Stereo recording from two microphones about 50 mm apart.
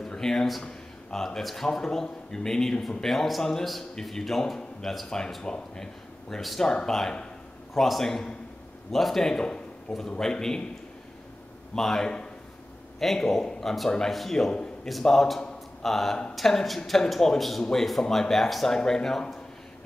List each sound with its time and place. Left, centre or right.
0.0 s a sound: centre
0.5 s a woman's voice: centre
5.4 s a man's voice: centre
11.7 s a woman's voice: centre
18.3 s a woman's voice: centre